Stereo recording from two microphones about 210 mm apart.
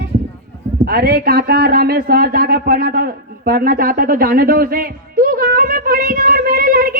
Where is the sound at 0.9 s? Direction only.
45° right (ahead or behind).